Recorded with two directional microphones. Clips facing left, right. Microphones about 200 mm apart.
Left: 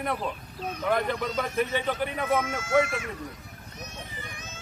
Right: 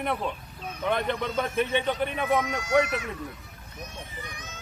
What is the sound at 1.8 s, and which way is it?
Speech, centre (ahead or behind).